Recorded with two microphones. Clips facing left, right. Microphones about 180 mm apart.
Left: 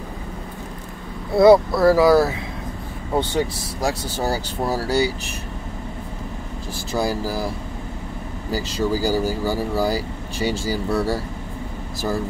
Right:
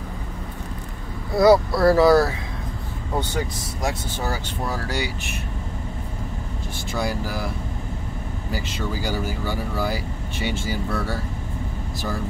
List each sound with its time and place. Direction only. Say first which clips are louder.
1.3 s speech: left 3 dB; 25° left (ahead or behind)
1.7 s speech: left 1 dB; centre (ahead or behind)
3.2 s speech: left 5 dB; 30° left (ahead or behind)
6.9 s speech: left 4 dB; 35° left (ahead or behind)